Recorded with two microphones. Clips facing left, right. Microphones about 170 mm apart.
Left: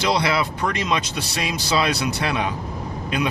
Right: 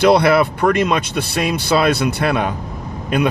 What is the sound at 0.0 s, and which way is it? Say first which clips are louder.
Speech: right 9 dB; 55° right (ahead or behind).